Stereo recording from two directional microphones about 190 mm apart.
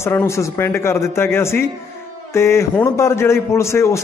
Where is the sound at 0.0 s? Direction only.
15° left (ahead or behind).